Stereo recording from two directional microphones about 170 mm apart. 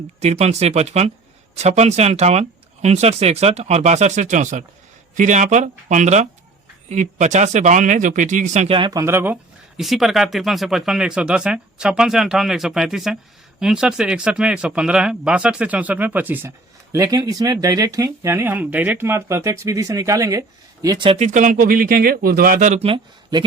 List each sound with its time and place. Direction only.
0.2 s speech: 40° right (ahead or behind)
8.7 s speech: 25° right (ahead or behind)
21.2 s speech: 45° right (ahead or behind)
22.8 s speech: 30° right (ahead or behind)